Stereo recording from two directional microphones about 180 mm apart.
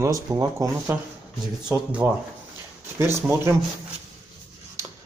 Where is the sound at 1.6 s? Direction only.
5° right (ahead or behind).